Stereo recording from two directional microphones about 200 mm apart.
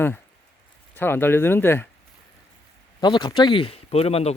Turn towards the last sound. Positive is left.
turn(degrees=30)  # may be behind; listen again after turning